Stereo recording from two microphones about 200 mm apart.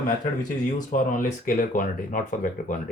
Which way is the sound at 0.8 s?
40° left (ahead or behind).